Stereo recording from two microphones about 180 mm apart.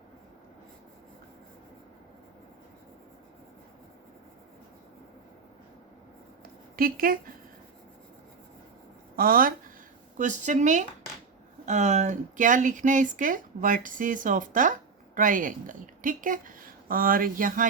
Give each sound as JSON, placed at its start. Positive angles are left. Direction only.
{"t": 6.7, "sound": "speech", "side_deg": -55}
{"t": 9.1, "sound": "speech", "side_deg": -55}